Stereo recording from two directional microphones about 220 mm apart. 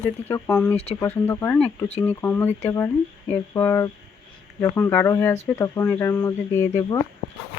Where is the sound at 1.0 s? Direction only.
10° left (ahead or behind).